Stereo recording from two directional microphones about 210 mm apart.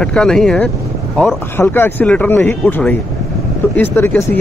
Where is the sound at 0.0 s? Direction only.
5° left (ahead or behind).